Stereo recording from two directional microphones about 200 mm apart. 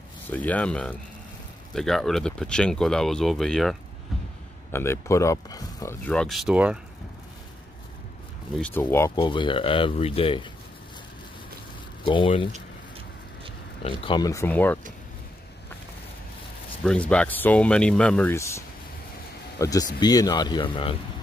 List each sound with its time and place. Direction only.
0.3 s speech: 5° left (ahead or behind)
4.7 s speech: 10° left (ahead or behind); by 6.8 s 5° right (ahead or behind)
8.5 s speech: 5° left (ahead or behind)
9.2 s speech: 25° left (ahead or behind)
12.0 s speech: 25° left (ahead or behind)
14.0 s speech: 20° left (ahead or behind)
16.8 s speech: 5° left (ahead or behind)
19.6 s speech: 20° left (ahead or behind)